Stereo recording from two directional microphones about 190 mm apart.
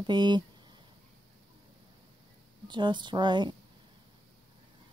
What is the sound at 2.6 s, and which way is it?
Speech, 25° right (ahead or behind).